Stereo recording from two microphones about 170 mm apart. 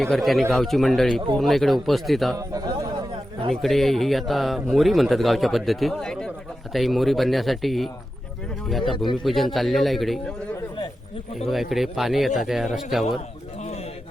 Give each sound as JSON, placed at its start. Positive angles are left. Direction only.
{"t": 0.0, "sound": "a man's voice", "side_deg": 0}
{"t": 2.3, "sound": "chatter", "side_deg": -20}
{"t": 3.5, "sound": "a man's voice", "side_deg": 0}
{"t": 11.7, "sound": "a man's voice", "side_deg": 0}